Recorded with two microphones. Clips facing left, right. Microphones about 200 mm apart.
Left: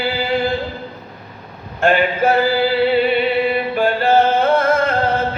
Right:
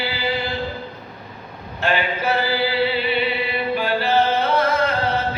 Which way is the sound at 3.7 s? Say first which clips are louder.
Left 4 dB; 50° left (ahead or behind).